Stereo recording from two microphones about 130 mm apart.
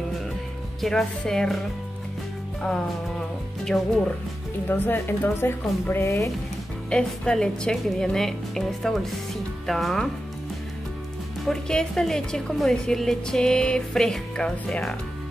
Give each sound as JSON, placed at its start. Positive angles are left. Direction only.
{"t": 0.7, "sound": "a woman's voice", "side_deg": 0}
{"t": 2.6, "sound": "a woman's voice", "side_deg": 5}
{"t": 4.6, "sound": "a woman's voice", "side_deg": 15}
{"t": 6.9, "sound": "a woman's voice", "side_deg": 5}
{"t": 11.4, "sound": "a woman's voice", "side_deg": 5}